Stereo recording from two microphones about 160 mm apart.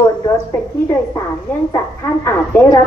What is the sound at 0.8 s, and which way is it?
A woman's voice, 20° left (ahead or behind).